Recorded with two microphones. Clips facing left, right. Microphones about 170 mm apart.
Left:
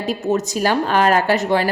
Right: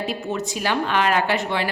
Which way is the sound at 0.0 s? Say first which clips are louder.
Left 6 dB; 40° left (ahead or behind).